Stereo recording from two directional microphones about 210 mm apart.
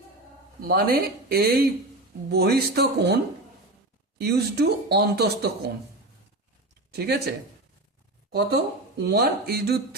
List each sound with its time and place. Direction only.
0.6 s speech: 45° right (ahead or behind)
4.2 s speech: 50° right (ahead or behind)
6.9 s speech: 50° right (ahead or behind)